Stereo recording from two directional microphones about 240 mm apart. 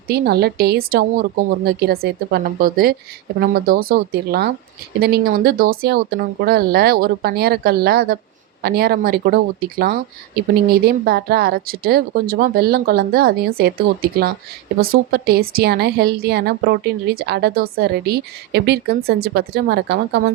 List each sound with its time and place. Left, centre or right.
0.1 s a woman's voice: right